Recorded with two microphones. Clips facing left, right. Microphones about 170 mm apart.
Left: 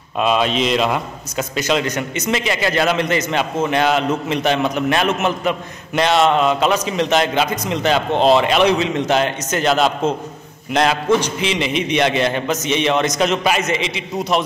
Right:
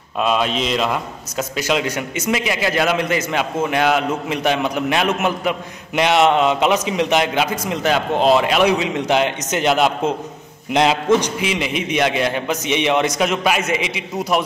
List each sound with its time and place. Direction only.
0.2 s a man's voice: centre (ahead or behind)
1.6 s a man's voice: 10° right (ahead or behind)
11.5 s a man's voice: 5° right (ahead or behind)